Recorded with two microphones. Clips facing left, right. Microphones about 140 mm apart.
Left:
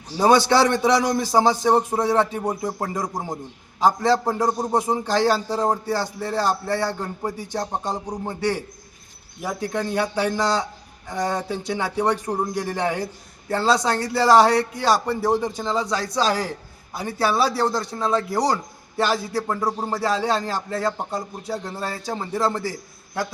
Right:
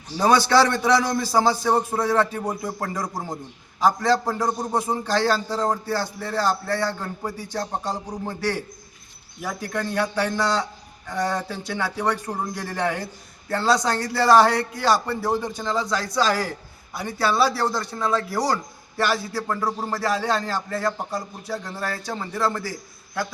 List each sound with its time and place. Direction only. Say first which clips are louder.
0.2 s a man's voice: left 1 dB; 20° left (ahead or behind)
13.5 s a man's voice: left 1 dB; 30° left (ahead or behind)
13.7 s a man's voice: left 1 dB; 10° left (ahead or behind)